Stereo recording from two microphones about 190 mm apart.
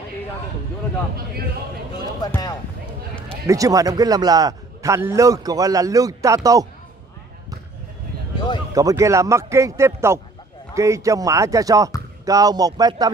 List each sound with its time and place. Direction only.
2.2 s speech: 20° left (ahead or behind)
3.4 s a man's voice: 15° right (ahead or behind)
8.7 s a man's voice: 15° right (ahead or behind)